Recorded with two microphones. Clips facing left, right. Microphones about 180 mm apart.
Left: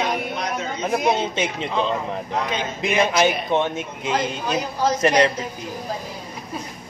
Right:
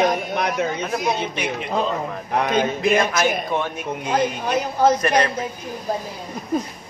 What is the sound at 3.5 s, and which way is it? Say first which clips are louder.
Speech: left 2 dB; 25° left (ahead or behind).